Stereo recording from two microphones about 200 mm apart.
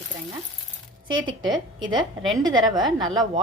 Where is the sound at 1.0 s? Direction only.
25° right (ahead or behind).